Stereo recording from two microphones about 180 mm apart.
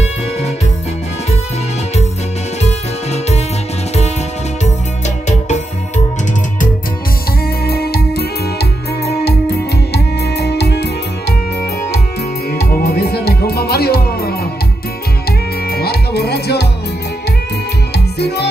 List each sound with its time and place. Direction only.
2.6 s music: 35° left (ahead or behind)
4.6 s music: 40° left (ahead or behind)
7.6 s music: 60° left (ahead or behind)
12.4 s music: 60° left (ahead or behind)
15.7 s music: 60° left (ahead or behind)
17.9 s music: 65° left (ahead or behind)